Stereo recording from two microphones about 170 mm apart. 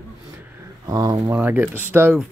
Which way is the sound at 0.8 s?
20° right (ahead or behind).